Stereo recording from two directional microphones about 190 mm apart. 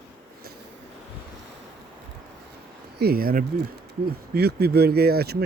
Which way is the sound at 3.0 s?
50° right (ahead or behind).